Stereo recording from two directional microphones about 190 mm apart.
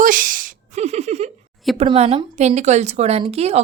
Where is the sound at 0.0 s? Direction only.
45° right (ahead or behind).